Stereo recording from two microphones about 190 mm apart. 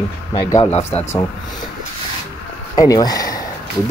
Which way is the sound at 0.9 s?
10° left (ahead or behind).